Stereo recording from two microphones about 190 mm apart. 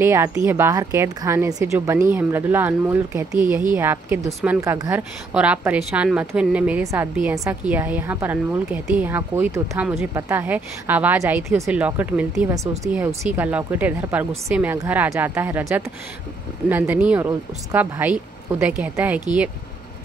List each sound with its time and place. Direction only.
0.0 s a woman's voice: 10° right (ahead or behind)